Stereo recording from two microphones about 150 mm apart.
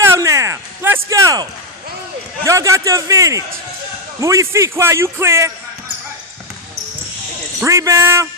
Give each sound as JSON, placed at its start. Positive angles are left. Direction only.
{"t": 0.0, "sound": "a sound", "side_deg": -20}
{"t": 2.4, "sound": "a man's voice", "side_deg": -20}
{"t": 7.6, "sound": "a man's voice", "side_deg": -20}